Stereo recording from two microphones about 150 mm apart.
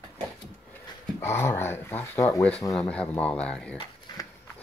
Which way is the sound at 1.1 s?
15° left (ahead or behind).